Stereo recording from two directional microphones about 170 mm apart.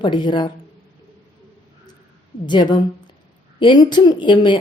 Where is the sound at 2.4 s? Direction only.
25° left (ahead or behind).